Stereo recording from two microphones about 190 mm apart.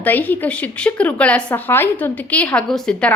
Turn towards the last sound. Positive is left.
turn(degrees=5)  # may be behind; listen again after turning